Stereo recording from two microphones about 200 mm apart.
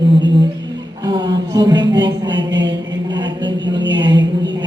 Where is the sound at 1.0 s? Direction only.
20° right (ahead or behind).